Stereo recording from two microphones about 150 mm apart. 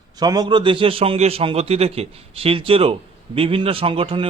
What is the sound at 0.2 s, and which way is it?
A man's voice, 25° right (ahead or behind).